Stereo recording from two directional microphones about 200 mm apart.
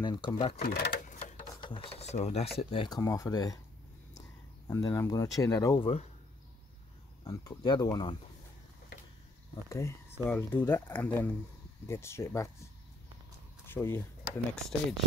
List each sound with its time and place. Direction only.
0.0 s speech: 20° left (ahead or behind)
0.6 s speech: 50° left (ahead or behind)
1.6 s speech: 25° left (ahead or behind)
4.6 s speech: 15° left (ahead or behind)
7.2 s speech: 20° left (ahead or behind)
9.7 s speech: 15° left (ahead or behind)
13.7 s speech: 10° left (ahead or behind)